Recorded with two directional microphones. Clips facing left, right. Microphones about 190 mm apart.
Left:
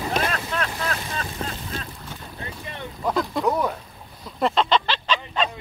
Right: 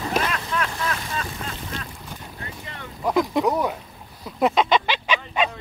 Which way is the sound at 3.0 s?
15° right (ahead or behind).